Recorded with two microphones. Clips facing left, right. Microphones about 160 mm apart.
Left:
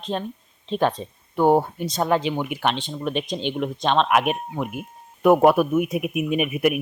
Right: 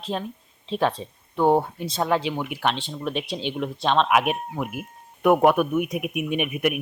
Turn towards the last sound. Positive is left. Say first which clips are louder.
# left 3 dB
turn(degrees=0)  # may be behind; listen again after turning